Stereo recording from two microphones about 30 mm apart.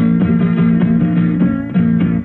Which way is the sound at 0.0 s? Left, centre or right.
Left.